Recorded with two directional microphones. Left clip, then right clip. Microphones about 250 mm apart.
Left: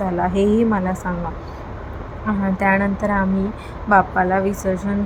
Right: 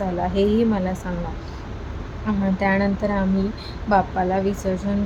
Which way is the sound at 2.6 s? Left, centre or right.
Centre.